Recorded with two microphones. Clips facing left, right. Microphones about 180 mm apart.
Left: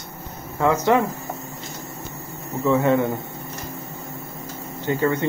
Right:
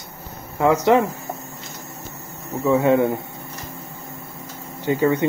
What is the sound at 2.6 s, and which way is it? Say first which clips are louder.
Speech: right 2 dB; 15° right (ahead or behind).